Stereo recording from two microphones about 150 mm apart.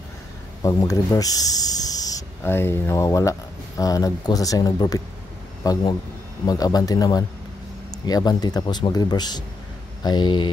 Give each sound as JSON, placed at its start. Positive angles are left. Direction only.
{"t": 0.6, "sound": "speech", "side_deg": 20}